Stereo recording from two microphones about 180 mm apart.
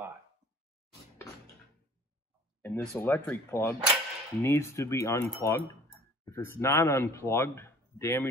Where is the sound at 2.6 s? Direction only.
10° left (ahead or behind).